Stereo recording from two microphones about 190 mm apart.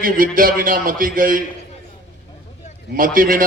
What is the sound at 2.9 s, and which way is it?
Speech, 45° right (ahead or behind).